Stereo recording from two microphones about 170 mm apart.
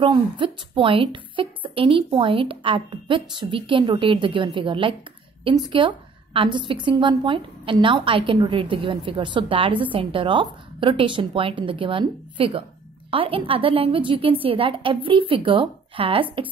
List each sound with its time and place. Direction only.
0.0 s a woman's voice: 30° right (ahead or behind)